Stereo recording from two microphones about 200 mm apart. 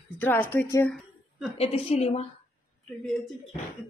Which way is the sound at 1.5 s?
30° left (ahead or behind).